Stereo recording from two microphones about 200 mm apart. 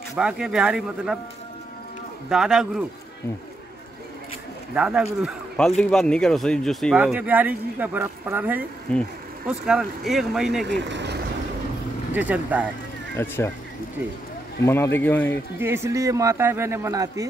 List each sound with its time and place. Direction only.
0.1 s speech: 5° right (ahead or behind)
2.2 s speech: 5° right (ahead or behind)
4.7 s speech: 5° right (ahead or behind)
8.9 s speech: 5° left (ahead or behind)
10.7 s speech: 60° right (ahead or behind)
12.1 s a man's voice: 10° right (ahead or behind)
13.1 s speech: 10° left (ahead or behind)
14.6 s speech: 10° left (ahead or behind)
15.6 s a man's voice: 15° right (ahead or behind)